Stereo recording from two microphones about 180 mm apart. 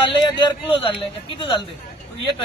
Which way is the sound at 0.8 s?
30° left (ahead or behind).